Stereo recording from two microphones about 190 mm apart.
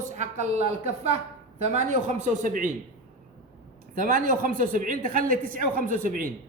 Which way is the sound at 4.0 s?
45° right (ahead or behind).